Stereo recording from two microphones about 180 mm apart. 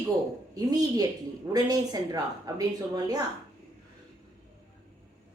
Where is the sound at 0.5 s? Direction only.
20° right (ahead or behind).